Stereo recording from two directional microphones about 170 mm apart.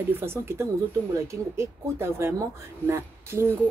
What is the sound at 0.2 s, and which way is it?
Speech, 15° right (ahead or behind).